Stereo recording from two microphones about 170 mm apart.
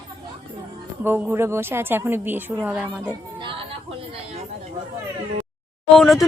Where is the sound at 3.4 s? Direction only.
30° right (ahead or behind).